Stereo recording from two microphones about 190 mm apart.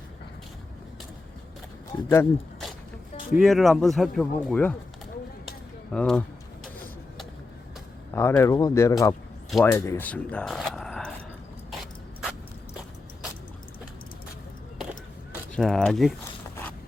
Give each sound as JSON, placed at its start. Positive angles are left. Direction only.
{"t": 1.9, "sound": "speech", "side_deg": 15}
{"t": 3.3, "sound": "speech", "side_deg": 0}
{"t": 5.5, "sound": "a sound", "side_deg": 5}
{"t": 8.3, "sound": "speech", "side_deg": 15}
{"t": 9.5, "sound": "speech", "side_deg": 0}
{"t": 9.7, "sound": "speech", "side_deg": 15}
{"t": 15.5, "sound": "speech", "side_deg": 5}